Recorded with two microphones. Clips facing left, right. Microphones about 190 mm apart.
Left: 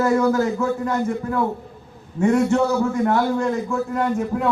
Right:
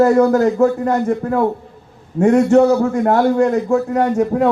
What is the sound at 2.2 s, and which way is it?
A man's voice, 45° right (ahead or behind).